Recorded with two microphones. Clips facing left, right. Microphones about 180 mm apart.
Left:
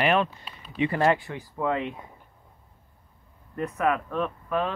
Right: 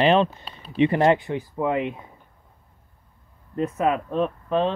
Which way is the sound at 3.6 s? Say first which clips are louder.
Right 3 dB; 20° right (ahead or behind).